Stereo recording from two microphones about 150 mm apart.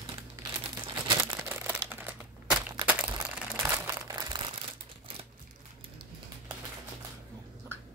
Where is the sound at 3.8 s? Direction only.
25° right (ahead or behind).